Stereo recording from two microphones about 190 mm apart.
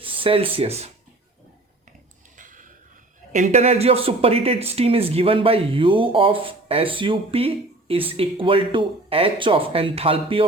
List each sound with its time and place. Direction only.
0.0 s speech: 30° right (ahead or behind)
2.3 s a sound: 45° right (ahead or behind)
3.3 s speech: 40° right (ahead or behind)